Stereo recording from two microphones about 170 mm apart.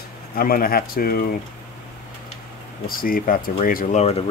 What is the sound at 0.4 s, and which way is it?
Speech, 55° left (ahead or behind).